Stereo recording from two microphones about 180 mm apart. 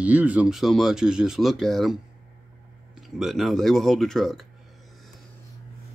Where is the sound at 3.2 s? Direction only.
Centre (ahead or behind).